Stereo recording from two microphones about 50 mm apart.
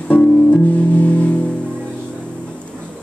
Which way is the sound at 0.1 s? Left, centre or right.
Left.